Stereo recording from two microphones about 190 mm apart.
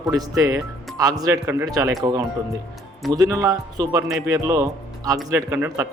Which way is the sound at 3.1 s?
15° right (ahead or behind).